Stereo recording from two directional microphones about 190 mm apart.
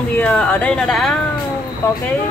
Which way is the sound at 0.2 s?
5° left (ahead or behind).